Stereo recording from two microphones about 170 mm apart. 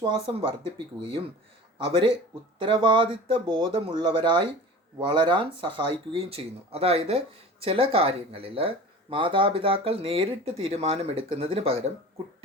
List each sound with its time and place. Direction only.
0.0 s speech: 35° right (ahead or behind)
1.8 s speech: 30° right (ahead or behind)